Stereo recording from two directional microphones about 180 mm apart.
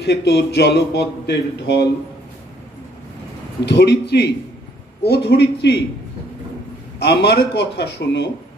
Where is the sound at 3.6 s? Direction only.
70° left (ahead or behind).